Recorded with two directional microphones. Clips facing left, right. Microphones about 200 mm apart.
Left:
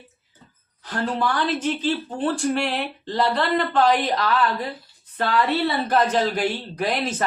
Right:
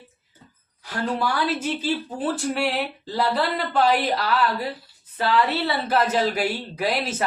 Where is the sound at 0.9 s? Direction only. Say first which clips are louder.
Left 1 dB; 10° right (ahead or behind).